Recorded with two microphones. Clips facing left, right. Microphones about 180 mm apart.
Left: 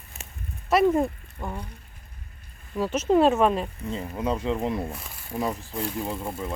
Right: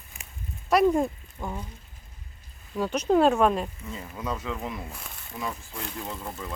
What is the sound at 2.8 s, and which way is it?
Speech, centre (ahead or behind).